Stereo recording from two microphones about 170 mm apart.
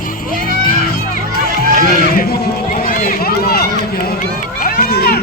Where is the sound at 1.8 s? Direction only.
65° left (ahead or behind).